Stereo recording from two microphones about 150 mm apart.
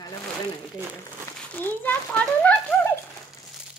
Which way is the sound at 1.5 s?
15° left (ahead or behind).